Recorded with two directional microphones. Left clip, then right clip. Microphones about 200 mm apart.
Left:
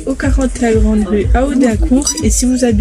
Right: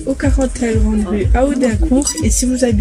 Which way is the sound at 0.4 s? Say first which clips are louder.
Left 4 dB; 20° left (ahead or behind).